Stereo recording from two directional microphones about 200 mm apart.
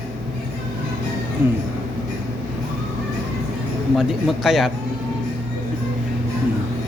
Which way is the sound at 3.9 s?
Centre (ahead or behind).